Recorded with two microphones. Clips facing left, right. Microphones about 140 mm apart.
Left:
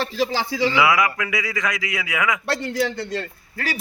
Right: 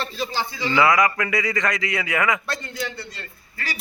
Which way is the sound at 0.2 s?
90° left.